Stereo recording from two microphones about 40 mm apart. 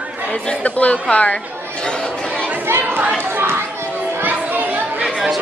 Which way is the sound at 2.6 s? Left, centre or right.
Right.